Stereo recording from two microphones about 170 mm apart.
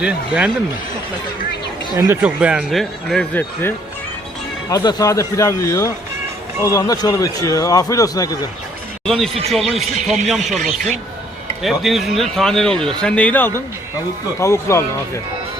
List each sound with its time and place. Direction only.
0.0 s speech: 5° right (ahead or behind)
2.0 s a man's voice: 10° right (ahead or behind); by 3.8 s 10° left (ahead or behind)
4.7 s a man's voice: 25° left (ahead or behind)
9.0 s a man's voice: centre (ahead or behind)
10.6 s speech: 45° right (ahead or behind)
11.6 s a man's voice: centre (ahead or behind); by 15.2 s 15° left (ahead or behind)